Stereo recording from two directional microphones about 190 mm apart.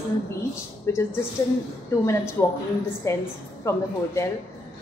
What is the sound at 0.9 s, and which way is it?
Speech, 15° left (ahead or behind).